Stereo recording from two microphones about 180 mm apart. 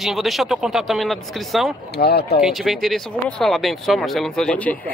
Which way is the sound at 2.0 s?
65° left (ahead or behind).